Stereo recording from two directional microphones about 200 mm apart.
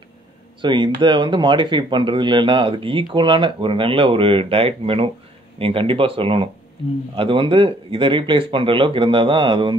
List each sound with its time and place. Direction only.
0.6 s speech: 25° right (ahead or behind)